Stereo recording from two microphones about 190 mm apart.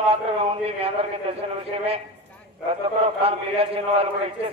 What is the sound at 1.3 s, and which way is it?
Speech, 30° right (ahead or behind).